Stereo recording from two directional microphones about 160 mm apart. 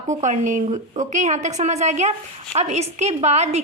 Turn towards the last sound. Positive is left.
turn(degrees=-45)  # may be behind; listen again after turning